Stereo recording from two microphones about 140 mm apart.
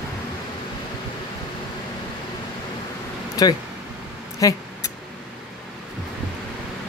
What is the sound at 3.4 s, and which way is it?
Speech, 25° left (ahead or behind).